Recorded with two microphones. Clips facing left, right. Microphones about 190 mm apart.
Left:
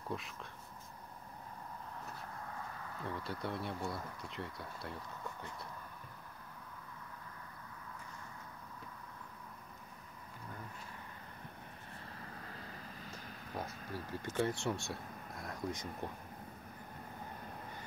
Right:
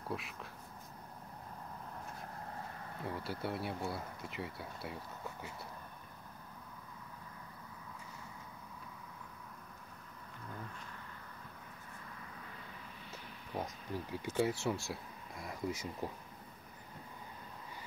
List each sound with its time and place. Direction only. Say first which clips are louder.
0.1 s speech: right 1 dB; centre (ahead or behind)
3.1 s speech: right 1 dB; 5° right (ahead or behind)
12.0 s vehicle: left 2 dB; 35° left (ahead or behind)
13.6 s speech: right 3 dB; 15° right (ahead or behind)